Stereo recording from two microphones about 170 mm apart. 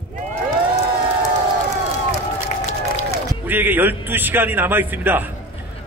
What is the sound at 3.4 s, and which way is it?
A man's voice, 10° right (ahead or behind).